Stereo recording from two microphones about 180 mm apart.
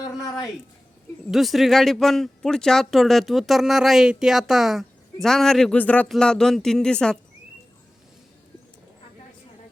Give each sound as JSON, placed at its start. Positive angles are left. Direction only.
{"t": 0.0, "sound": "speech", "side_deg": 20}
{"t": 1.3, "sound": "speech", "side_deg": 0}